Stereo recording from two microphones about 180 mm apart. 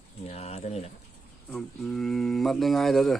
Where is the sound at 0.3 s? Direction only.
35° left (ahead or behind).